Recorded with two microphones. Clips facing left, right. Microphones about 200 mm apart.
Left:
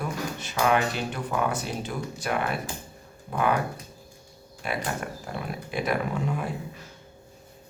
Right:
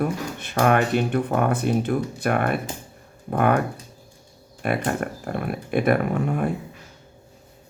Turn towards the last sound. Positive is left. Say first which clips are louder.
# right 6 dB
turn(degrees=-55)  # may be behind; listen again after turning